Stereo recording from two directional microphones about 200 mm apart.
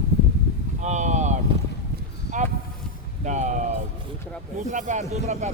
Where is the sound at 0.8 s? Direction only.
35° right (ahead or behind).